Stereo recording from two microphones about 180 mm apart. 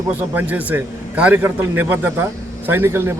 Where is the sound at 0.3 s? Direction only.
10° right (ahead or behind).